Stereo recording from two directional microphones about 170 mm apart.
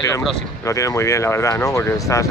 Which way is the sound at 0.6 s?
15° left (ahead or behind).